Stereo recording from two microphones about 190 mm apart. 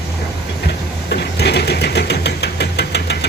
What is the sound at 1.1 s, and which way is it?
Engine, 60° left (ahead or behind).